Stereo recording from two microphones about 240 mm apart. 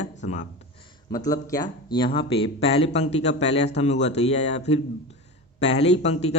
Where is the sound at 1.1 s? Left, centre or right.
Centre.